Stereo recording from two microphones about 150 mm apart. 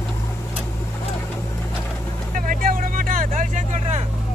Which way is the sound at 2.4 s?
65° right (ahead or behind).